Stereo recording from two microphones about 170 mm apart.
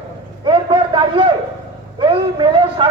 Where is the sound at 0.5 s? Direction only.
30° right (ahead or behind).